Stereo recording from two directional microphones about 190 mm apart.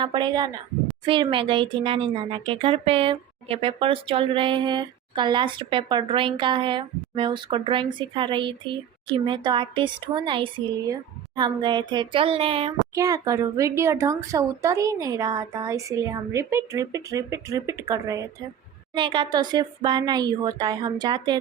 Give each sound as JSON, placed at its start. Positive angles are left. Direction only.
{"t": 0.0, "sound": "speech", "side_deg": -25}
{"t": 12.9, "sound": "speech", "side_deg": -20}